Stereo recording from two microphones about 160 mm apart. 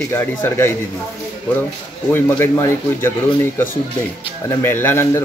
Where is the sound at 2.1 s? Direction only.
15° left (ahead or behind).